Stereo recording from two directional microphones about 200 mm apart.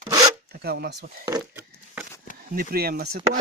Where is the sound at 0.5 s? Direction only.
50° right (ahead or behind).